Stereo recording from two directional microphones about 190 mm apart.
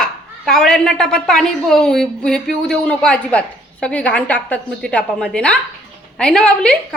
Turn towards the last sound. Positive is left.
turn(degrees=5)  # may be behind; listen again after turning